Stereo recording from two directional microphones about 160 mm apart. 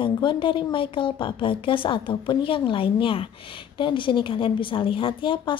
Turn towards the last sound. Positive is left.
turn(degrees=30)  # may be behind; listen again after turning